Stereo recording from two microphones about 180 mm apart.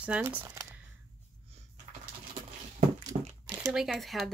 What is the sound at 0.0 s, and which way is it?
Speech, 10° right (ahead or behind).